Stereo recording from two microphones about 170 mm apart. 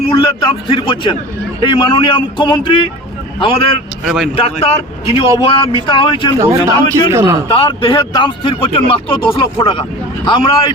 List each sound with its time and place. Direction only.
0.1 s a man's voice: 30° left (ahead or behind)
4.0 s speech: 5° right (ahead or behind)
4.4 s a man's voice: 35° left (ahead or behind)
6.4 s a man's voice: 20° right (ahead or behind)
7.4 s speech: 30° left (ahead or behind)